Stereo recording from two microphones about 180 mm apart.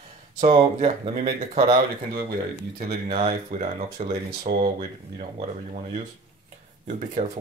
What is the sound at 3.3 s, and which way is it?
Speech, 50° right (ahead or behind).